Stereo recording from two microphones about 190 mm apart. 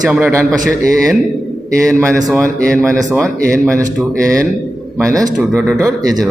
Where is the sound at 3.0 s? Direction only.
15° right (ahead or behind).